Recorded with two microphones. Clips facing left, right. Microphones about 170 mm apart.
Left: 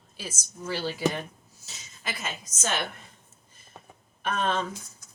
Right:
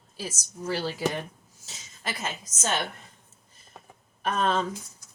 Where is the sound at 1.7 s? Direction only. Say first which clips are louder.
Right 2 dB; 40° right (ahead or behind).